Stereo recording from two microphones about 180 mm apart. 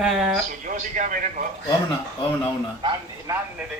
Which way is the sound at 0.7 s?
45° right (ahead or behind).